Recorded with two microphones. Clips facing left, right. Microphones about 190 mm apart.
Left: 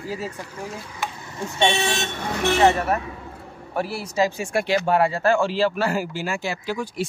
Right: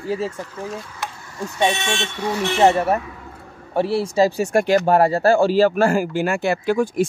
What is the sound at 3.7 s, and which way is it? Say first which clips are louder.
Speech: right 7 dB; 25° right (ahead or behind).